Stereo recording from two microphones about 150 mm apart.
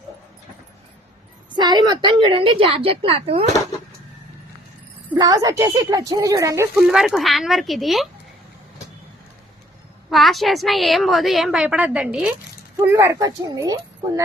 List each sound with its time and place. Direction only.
1.5 s a woman's voice: 30° right (ahead or behind)
5.1 s speech: 25° right (ahead or behind)
6.7 s a woman's voice: 5° right (ahead or behind)
10.1 s a woman's voice: centre (ahead or behind)
12.8 s speech: 20° right (ahead or behind)